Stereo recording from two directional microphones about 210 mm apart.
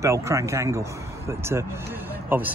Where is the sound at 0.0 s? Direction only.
15° right (ahead or behind).